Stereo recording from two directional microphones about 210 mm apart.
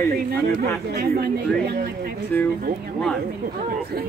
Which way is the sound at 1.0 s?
50° right (ahead or behind).